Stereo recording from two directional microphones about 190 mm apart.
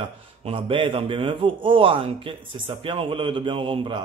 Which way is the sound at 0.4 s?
30° right (ahead or behind).